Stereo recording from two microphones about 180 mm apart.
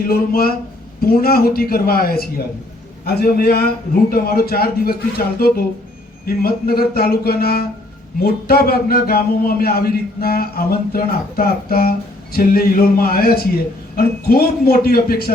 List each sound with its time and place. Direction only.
0.1 s a man's voice: 55° left (ahead or behind)